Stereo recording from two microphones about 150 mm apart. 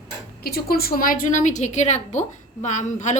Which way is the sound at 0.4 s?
90° left.